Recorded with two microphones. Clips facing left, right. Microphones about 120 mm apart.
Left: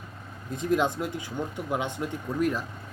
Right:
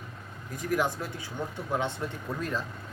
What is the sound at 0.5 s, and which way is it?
Speech, 25° left (ahead or behind).